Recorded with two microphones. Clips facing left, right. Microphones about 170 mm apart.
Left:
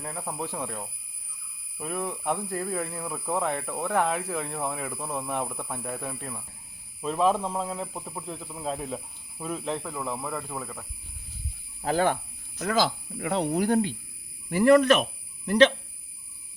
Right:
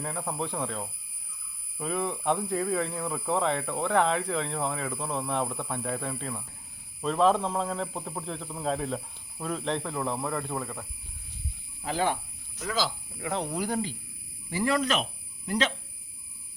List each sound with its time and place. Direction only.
0.0 s speech: centre (ahead or behind)
11.8 s speech: 50° left (ahead or behind)